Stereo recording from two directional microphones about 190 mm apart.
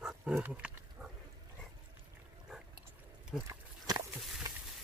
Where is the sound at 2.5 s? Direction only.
Centre (ahead or behind).